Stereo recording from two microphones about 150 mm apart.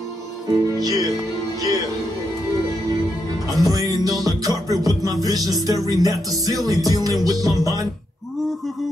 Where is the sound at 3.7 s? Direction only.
25° right (ahead or behind).